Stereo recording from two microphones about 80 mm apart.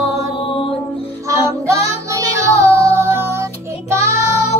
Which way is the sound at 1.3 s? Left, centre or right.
Right.